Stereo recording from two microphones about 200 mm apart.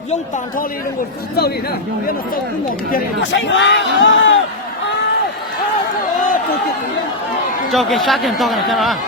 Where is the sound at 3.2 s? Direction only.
65° left (ahead or behind).